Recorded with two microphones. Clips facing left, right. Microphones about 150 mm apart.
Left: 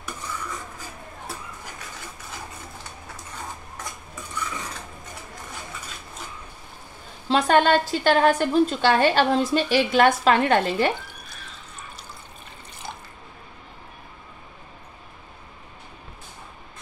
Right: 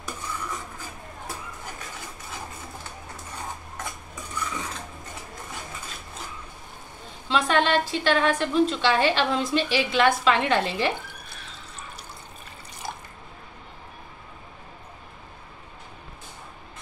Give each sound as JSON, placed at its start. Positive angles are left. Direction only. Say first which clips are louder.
{"t": 7.2, "sound": "a woman's voice", "louder": "left 4 dB", "side_deg": 40}